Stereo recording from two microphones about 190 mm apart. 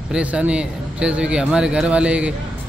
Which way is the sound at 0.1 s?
5° right (ahead or behind).